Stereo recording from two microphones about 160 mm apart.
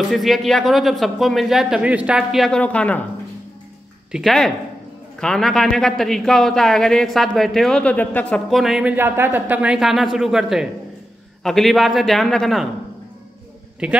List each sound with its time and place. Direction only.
0.1 s a man's voice: centre (ahead or behind)
4.1 s a man's voice: centre (ahead or behind)
8.9 s a man's voice: 15° right (ahead or behind); by 12.6 s centre (ahead or behind)
13.8 s a man's voice: 5° right (ahead or behind)